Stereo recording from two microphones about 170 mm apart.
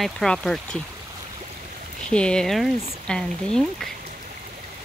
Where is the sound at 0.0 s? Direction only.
Centre (ahead or behind).